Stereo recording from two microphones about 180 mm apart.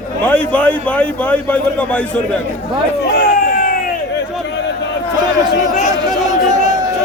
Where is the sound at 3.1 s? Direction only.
50° left (ahead or behind).